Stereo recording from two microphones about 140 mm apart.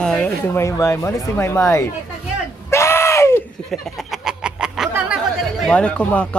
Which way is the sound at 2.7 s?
20° left (ahead or behind).